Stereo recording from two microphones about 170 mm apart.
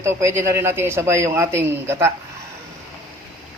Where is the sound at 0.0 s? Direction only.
15° right (ahead or behind).